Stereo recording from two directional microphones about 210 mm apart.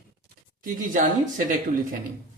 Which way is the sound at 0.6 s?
40° right (ahead or behind).